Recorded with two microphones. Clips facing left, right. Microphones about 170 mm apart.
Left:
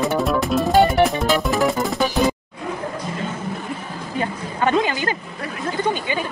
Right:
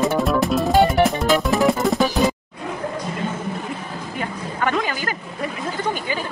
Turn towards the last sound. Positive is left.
turn(degrees=25)  # may be behind; listen again after turning